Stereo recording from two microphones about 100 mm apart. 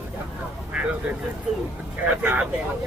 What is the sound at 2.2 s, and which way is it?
Speech, 15° right (ahead or behind).